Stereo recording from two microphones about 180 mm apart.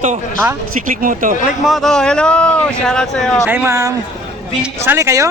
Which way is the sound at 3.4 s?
10° right (ahead or behind).